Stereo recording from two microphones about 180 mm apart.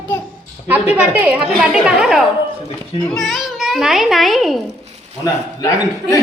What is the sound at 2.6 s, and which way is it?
Speech, 30° left (ahead or behind).